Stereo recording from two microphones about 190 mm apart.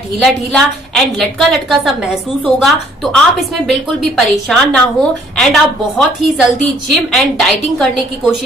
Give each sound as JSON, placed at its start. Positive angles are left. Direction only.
{"t": 0.2, "sound": "a woman's voice", "side_deg": 5}